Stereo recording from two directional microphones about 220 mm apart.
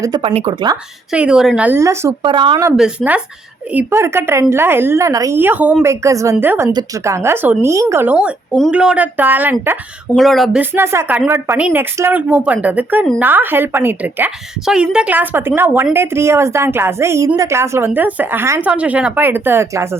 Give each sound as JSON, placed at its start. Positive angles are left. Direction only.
{"t": 0.0, "sound": "speech", "side_deg": -20}
{"t": 1.1, "sound": "a woman's voice", "side_deg": -5}
{"t": 2.7, "sound": "a woman's voice", "side_deg": -5}